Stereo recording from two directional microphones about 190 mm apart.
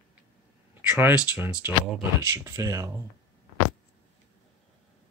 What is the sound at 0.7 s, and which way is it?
Speech, 10° right (ahead or behind).